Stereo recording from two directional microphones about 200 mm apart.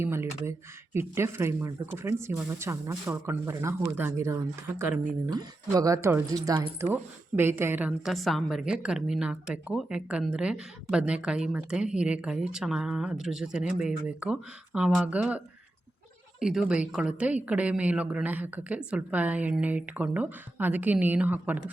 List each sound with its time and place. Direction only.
0.0 s a woman's voice: 10° right (ahead or behind)
16.4 s a woman's voice: centre (ahead or behind)